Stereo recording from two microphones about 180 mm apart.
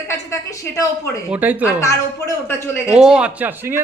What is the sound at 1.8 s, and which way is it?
A woman's voice, 15° left (ahead or behind).